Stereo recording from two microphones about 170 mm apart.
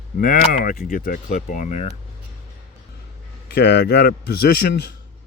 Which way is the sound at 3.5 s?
70° left (ahead or behind).